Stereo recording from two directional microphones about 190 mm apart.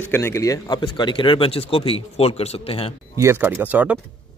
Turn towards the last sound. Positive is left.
turn(degrees=-5)  # may be behind; listen again after turning